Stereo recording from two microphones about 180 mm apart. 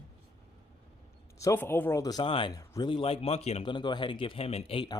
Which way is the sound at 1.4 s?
15° left (ahead or behind).